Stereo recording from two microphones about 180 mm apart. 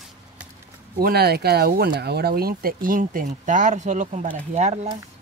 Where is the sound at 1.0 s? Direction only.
60° right (ahead or behind); by 4.7 s 40° right (ahead or behind).